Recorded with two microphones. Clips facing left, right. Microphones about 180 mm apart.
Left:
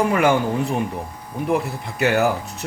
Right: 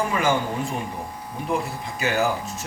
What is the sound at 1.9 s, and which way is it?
Speech, 65° left (ahead or behind).